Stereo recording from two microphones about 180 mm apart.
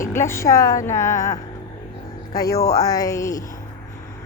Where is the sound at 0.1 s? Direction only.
15° left (ahead or behind).